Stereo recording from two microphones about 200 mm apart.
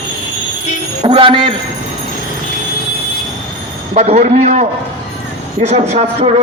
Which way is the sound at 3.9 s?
35° right (ahead or behind).